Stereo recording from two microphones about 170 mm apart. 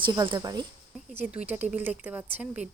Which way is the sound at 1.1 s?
10° right (ahead or behind).